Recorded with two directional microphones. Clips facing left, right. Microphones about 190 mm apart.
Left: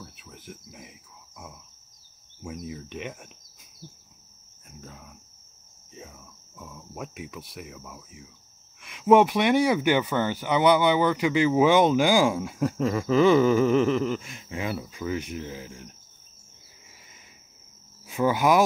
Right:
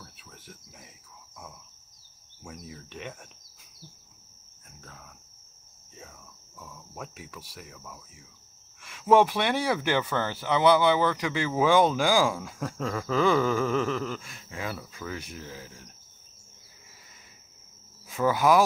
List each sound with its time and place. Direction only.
0.0 s insect: 15° left (ahead or behind)
2.4 s speech: 15° left (ahead or behind)
4.8 s insect: 15° left (ahead or behind)
6.6 s cricket: 15° left (ahead or behind)
8.8 s speech: 15° left (ahead or behind)
18.0 s speech: 15° left (ahead or behind)